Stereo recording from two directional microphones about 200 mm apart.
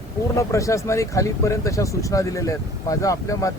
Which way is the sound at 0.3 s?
15° left (ahead or behind).